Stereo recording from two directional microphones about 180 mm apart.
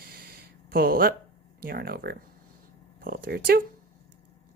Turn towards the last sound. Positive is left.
turn(degrees=-60)  # may be behind; listen again after turning